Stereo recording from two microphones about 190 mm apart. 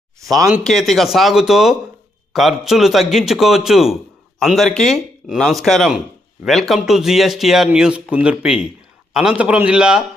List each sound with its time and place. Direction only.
0.3 s a man's voice: 15° right (ahead or behind)
0.6 s a man's voice: centre (ahead or behind)